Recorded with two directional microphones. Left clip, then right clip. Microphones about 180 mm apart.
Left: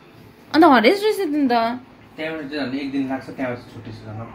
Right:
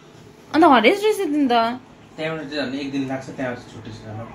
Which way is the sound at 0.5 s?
15° left (ahead or behind).